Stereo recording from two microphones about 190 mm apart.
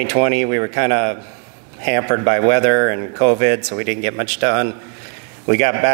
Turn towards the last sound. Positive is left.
turn(degrees=-10)  # may be behind; listen again after turning